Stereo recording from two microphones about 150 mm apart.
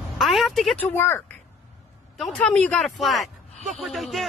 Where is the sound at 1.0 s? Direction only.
15° left (ahead or behind).